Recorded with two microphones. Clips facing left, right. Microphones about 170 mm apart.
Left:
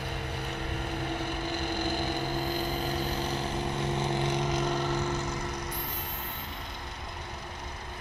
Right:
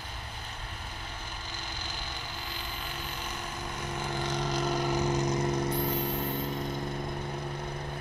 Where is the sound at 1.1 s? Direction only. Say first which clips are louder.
Left 11 dB; 60° left (ahead or behind); by 3.4 s 35° left (ahead or behind).